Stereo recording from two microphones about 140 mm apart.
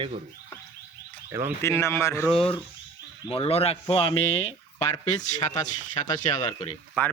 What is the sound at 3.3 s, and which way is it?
Speech, 45° left (ahead or behind).